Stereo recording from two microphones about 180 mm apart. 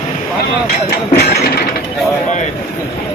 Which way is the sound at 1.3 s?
65° left (ahead or behind).